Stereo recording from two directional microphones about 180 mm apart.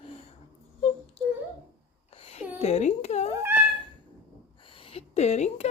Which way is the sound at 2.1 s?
35° left (ahead or behind).